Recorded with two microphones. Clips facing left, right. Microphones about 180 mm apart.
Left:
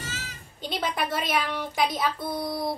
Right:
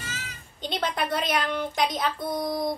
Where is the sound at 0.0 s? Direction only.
40° left (ahead or behind).